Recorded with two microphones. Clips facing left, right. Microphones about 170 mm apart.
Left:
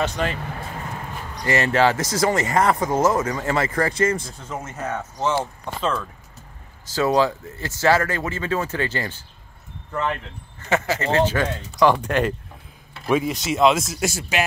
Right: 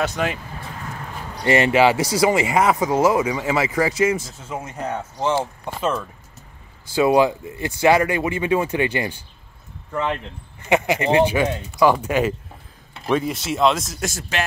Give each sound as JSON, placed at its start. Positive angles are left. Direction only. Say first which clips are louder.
{"t": 0.0, "sound": "speech", "louder": "right 1 dB", "side_deg": -5}
{"t": 1.3, "sound": "speech", "louder": "right 4 dB", "side_deg": -25}
{"t": 1.7, "sound": "speech", "louder": "right 3 dB", "side_deg": -10}
{"t": 10.7, "sound": "speech", "louder": "right 3 dB", "side_deg": -15}